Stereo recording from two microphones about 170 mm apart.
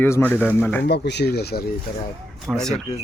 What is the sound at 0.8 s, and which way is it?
Speech, 85° left.